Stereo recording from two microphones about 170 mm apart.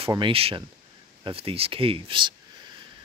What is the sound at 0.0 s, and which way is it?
Speech, 30° right (ahead or behind).